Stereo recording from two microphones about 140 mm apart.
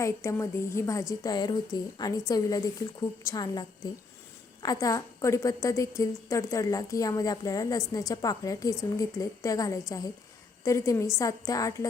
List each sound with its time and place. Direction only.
0.0 s a woman's voice: 20° left (ahead or behind)